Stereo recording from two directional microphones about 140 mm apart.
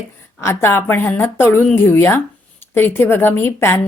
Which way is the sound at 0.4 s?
20° left (ahead or behind).